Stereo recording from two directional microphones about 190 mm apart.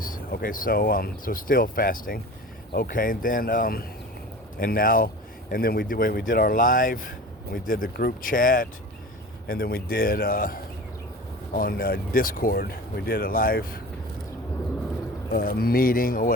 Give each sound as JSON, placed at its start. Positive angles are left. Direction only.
{"t": 0.0, "sound": "speech", "side_deg": 50}
{"t": 15.3, "sound": "speech", "side_deg": 50}